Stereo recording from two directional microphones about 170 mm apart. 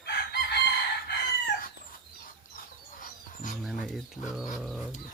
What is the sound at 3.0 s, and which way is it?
Wild animals, 50° left (ahead or behind).